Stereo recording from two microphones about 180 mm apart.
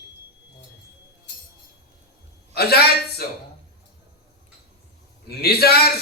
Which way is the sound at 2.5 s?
60° left (ahead or behind).